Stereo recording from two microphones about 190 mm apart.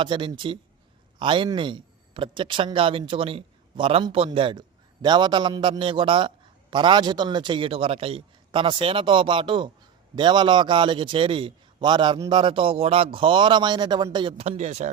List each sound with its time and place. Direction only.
0.0 s a man's voice: 25° right (ahead or behind)